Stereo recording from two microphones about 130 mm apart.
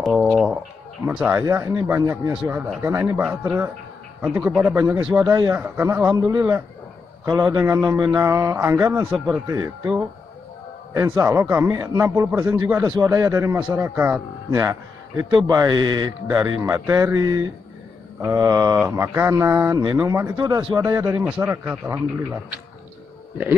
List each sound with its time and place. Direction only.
0.0 s a man's voice: centre (ahead or behind); by 3.2 s 20° right (ahead or behind)
3.2 s a man's voice: 5° right (ahead or behind); by 8.7 s 20° right (ahead or behind)
9.1 s speech: centre (ahead or behind)
9.5 s a man's voice: 20° right (ahead or behind)
13.1 s a man's voice: 20° right (ahead or behind)